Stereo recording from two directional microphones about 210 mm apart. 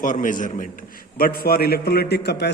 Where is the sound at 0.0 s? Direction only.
40° left (ahead or behind).